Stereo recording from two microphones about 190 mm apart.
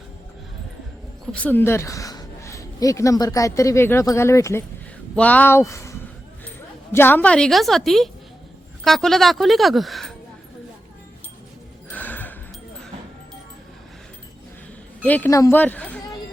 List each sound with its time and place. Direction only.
1.3 s a woman's voice: 10° left (ahead or behind)
11.9 s a sound: 10° left (ahead or behind)
15.0 s speech: 10° left (ahead or behind)